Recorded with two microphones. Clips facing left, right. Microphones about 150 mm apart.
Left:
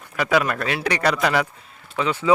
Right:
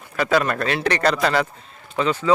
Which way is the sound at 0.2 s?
10° left (ahead or behind).